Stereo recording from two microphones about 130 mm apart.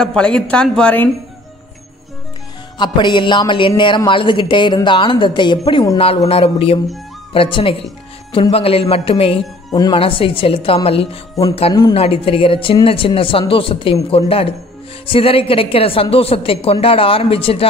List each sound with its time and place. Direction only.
0.0 s a woman's voice: 5° left (ahead or behind)
2.8 s a woman's voice: 35° left (ahead or behind)
5.9 s a woman's voice: 50° left (ahead or behind)
9.7 s speech: 30° left (ahead or behind)
9.9 s a woman's voice: 45° left (ahead or behind)